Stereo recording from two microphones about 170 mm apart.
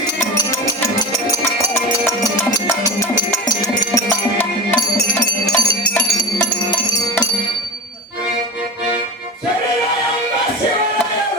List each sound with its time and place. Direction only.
0.2 s music: 20° left (ahead or behind)
3.9 s music: 10° left (ahead or behind)
5.1 s bell: 10° left (ahead or behind)